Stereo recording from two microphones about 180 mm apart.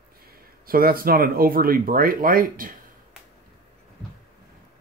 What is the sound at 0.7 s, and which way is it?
Speech, 55° right (ahead or behind).